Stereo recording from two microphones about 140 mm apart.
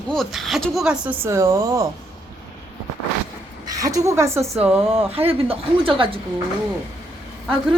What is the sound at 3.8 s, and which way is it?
Speech, 25° right (ahead or behind).